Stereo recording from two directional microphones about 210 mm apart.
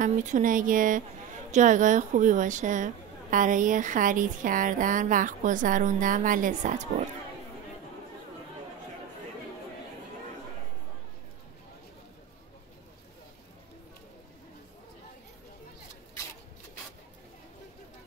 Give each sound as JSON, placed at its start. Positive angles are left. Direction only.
{"t": 0.0, "sound": "a woman's voice", "side_deg": -35}